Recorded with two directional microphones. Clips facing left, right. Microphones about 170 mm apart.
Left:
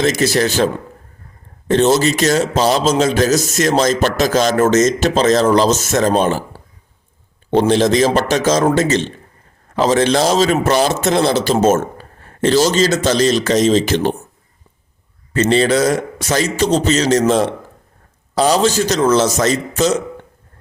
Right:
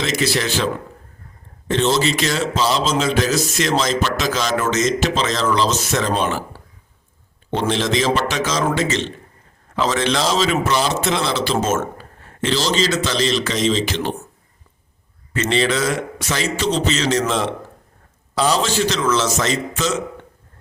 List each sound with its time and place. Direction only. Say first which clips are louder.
0.0 s a man's voice: left 6 dB; 45° left (ahead or behind)
7.7 s a man's voice: left 4 dB; 40° left (ahead or behind)
15.3 s a man's voice: left 6 dB; 40° left (ahead or behind)